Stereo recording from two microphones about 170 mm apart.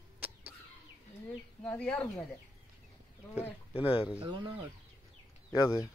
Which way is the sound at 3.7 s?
35° left (ahead or behind).